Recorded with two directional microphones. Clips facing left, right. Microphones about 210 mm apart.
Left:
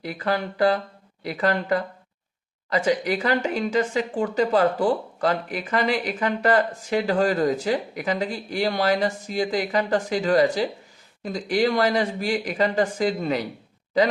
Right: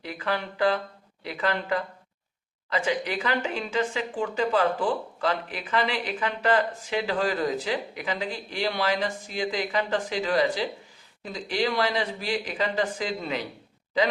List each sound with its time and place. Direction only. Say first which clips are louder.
0.0 s speech: left 4 dB; 40° left (ahead or behind)